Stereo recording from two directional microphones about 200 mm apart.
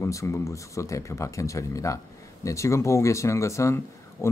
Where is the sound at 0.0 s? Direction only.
15° left (ahead or behind).